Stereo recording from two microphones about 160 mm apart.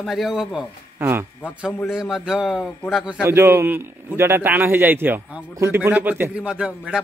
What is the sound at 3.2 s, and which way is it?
Speech, 15° right (ahead or behind).